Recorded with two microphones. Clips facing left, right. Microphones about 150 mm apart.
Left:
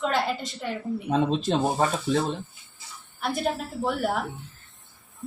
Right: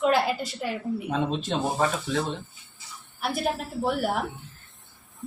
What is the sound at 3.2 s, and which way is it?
Speech, 5° right (ahead or behind).